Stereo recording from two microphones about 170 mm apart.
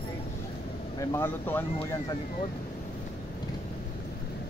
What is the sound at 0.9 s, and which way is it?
Speech, 15° left (ahead or behind).